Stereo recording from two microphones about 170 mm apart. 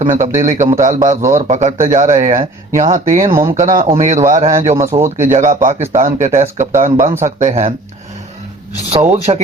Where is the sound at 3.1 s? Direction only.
35° right (ahead or behind).